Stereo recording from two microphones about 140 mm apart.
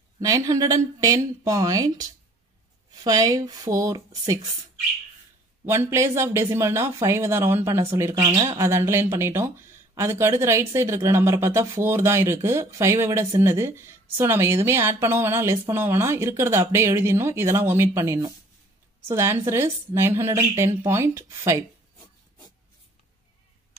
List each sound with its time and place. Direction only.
0.2 s speech: 25° right (ahead or behind)
5.7 s a woman's voice: 20° right (ahead or behind)